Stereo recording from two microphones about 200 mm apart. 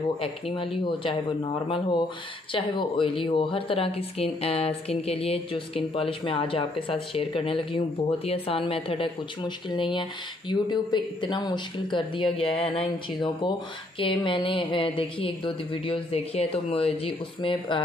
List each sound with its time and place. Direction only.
0.2 s speech: 30° left (ahead or behind)